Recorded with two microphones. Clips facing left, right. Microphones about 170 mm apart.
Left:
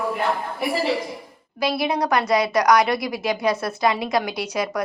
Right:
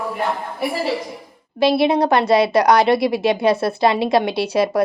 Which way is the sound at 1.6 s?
25° right (ahead or behind).